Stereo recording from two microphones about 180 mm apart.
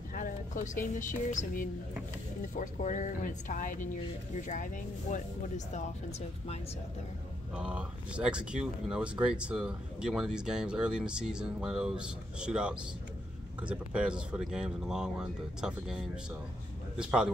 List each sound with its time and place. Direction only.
0.1 s a sound: 45° left (ahead or behind)
0.9 s a woman's voice: 45° left (ahead or behind)
7.5 s speech: 5° right (ahead or behind)